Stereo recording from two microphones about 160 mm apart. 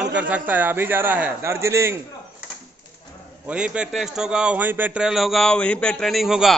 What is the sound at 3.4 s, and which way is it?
A man's voice, 5° right (ahead or behind).